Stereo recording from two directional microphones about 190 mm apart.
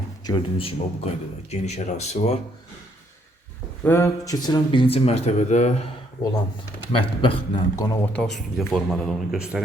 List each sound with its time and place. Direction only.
0.3 s speech: 25° left (ahead or behind)
3.8 s speech: 15° left (ahead or behind); by 5.7 s 35° left (ahead or behind)
6.9 s speech: 25° left (ahead or behind)
8.1 s speech: 5° left (ahead or behind)